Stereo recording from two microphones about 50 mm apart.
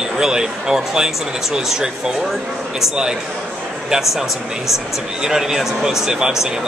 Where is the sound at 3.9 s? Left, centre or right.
Centre.